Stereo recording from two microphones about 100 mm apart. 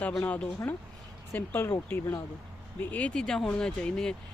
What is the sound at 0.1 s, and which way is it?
Speech, 10° left (ahead or behind).